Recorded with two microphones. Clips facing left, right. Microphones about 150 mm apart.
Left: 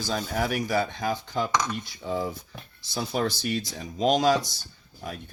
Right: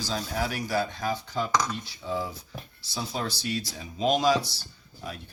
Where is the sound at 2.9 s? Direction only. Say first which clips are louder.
Left 5 dB; 55° left (ahead or behind).